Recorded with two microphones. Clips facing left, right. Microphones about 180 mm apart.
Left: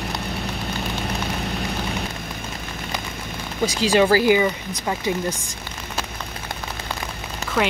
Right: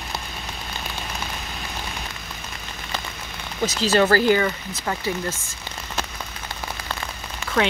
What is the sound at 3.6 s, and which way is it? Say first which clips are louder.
Speech: left 1 dB; 10° left (ahead or behind).